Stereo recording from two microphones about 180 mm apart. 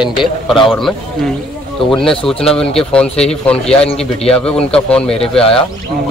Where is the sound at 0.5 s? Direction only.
Centre (ahead or behind).